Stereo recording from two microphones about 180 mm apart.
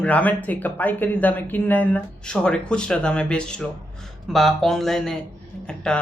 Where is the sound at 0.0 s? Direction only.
10° left (ahead or behind).